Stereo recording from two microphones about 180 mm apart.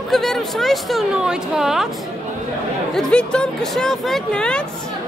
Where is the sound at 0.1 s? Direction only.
Centre (ahead or behind).